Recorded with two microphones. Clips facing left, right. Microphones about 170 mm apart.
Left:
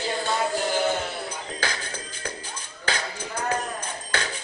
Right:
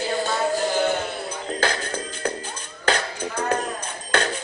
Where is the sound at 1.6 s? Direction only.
55° right (ahead or behind).